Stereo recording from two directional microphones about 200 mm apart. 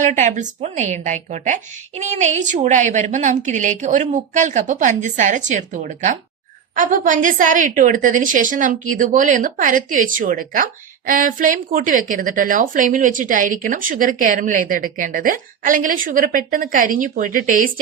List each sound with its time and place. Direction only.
0.0 s a woman's voice: 35° right (ahead or behind)